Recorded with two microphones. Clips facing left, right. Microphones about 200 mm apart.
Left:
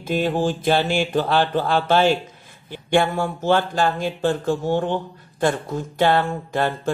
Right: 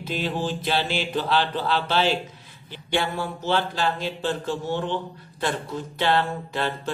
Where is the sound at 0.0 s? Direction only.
50° left (ahead or behind).